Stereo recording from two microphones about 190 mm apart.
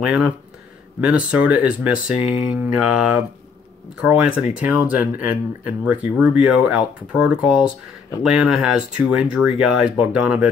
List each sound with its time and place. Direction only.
0.0 s speech: 5° right (ahead or behind)